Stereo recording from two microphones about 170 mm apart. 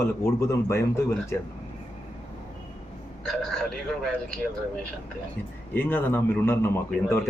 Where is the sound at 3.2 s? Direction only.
5° left (ahead or behind).